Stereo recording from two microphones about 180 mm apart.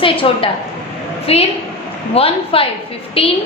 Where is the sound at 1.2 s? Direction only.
35° left (ahead or behind).